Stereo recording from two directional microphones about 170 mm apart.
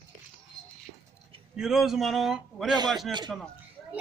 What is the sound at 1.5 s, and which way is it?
Speech, centre (ahead or behind).